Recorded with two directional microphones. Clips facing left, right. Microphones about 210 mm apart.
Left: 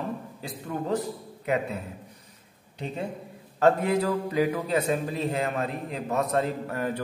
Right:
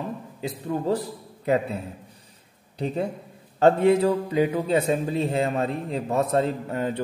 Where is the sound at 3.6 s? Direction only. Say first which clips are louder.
Right 5 dB; 25° right (ahead or behind).